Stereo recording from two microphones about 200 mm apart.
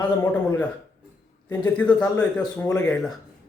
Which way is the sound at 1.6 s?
5° left (ahead or behind).